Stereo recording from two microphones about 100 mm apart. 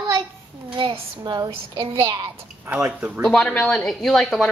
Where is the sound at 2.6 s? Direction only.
15° right (ahead or behind).